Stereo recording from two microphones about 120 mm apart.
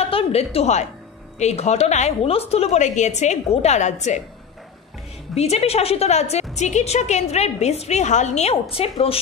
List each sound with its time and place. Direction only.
0.0 s a sound: 55° left (ahead or behind)
1.4 s a woman's voice: 65° left (ahead or behind)
5.3 s a woman's voice: 60° left (ahead or behind)